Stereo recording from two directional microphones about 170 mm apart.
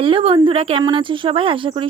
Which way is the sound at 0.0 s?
30° right (ahead or behind).